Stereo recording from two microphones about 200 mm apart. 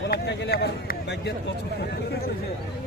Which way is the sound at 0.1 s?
60° left (ahead or behind).